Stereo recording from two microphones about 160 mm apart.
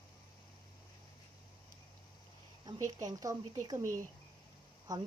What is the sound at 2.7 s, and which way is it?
Speech, 25° right (ahead or behind).